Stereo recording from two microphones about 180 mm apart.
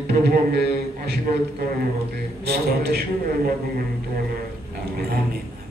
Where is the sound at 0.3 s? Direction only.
60° right (ahead or behind).